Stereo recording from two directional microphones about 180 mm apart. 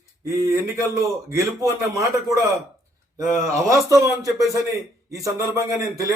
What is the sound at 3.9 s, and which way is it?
Speech, 20° right (ahead or behind).